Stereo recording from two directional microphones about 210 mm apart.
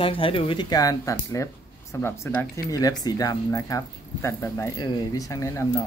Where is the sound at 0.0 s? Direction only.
25° left (ahead or behind).